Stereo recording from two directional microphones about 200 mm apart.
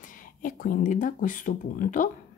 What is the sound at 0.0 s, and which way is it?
A woman's voice, 40° left (ahead or behind).